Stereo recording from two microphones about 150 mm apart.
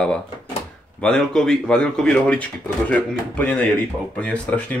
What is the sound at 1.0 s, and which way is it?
Speech, 5° left (ahead or behind).